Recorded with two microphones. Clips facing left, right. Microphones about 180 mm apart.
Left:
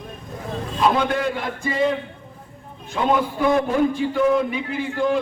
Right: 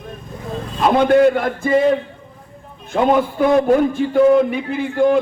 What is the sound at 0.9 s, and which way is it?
Speech, 50° right (ahead or behind).